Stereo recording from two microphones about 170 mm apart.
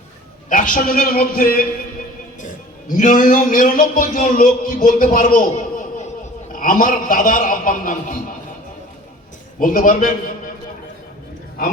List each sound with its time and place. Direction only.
0.5 s a man's voice: 55° left (ahead or behind)
9.6 s a man's voice: 55° left (ahead or behind)